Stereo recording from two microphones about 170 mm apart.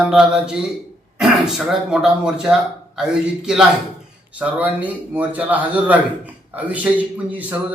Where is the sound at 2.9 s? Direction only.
5° right (ahead or behind).